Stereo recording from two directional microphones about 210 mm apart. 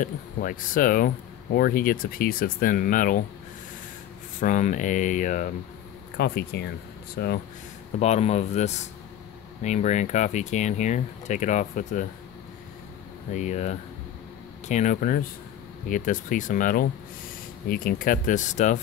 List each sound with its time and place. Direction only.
0.0 s speech: 40° left (ahead or behind)
4.4 s speech: 35° left (ahead or behind)
6.1 s speech: 50° left (ahead or behind)
8.0 s speech: 30° left (ahead or behind)
13.3 s speech: 35° left (ahead or behind)